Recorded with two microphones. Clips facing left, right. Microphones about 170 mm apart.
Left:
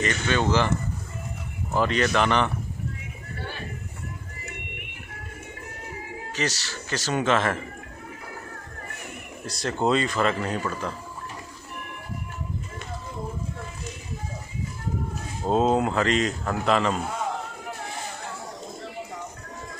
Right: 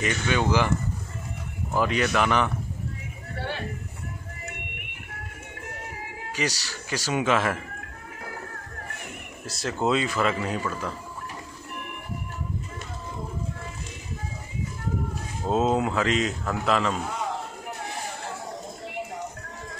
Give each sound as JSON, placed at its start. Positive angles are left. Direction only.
{"t": 0.0, "sound": "speech", "side_deg": -10}
{"t": 1.8, "sound": "speech", "side_deg": -5}
{"t": 3.3, "sound": "a sound", "side_deg": -70}
{"t": 6.3, "sound": "speech", "side_deg": -10}
{"t": 9.5, "sound": "speech", "side_deg": -5}
{"t": 15.5, "sound": "speech", "side_deg": 0}